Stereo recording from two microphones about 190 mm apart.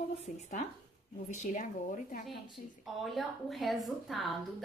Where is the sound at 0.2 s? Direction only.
40° left (ahead or behind).